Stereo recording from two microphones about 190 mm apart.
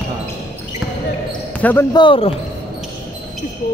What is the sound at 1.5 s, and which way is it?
Speech, 10° left (ahead or behind).